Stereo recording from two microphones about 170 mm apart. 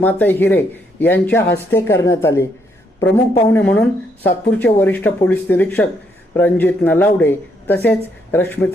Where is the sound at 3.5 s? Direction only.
10° left (ahead or behind).